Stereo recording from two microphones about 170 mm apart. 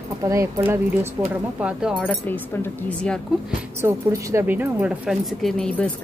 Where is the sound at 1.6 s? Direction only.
5° right (ahead or behind).